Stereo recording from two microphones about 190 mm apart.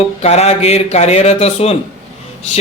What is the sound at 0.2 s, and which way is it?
A man's voice, 35° left (ahead or behind).